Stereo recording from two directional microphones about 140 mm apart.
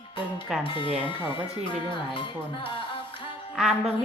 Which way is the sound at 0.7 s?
40° left (ahead or behind).